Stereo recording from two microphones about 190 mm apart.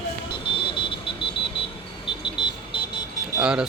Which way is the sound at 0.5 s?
25° left (ahead or behind).